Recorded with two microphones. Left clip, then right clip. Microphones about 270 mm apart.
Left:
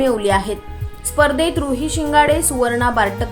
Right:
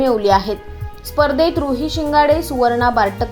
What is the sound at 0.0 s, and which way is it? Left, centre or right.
A woman's voice, centre.